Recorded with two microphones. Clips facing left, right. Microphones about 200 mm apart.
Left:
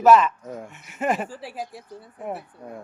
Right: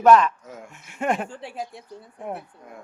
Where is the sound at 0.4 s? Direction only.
35° left (ahead or behind).